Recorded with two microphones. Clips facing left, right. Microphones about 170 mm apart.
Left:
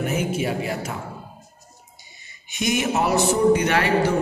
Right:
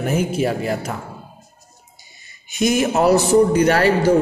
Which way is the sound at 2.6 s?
40° right (ahead or behind).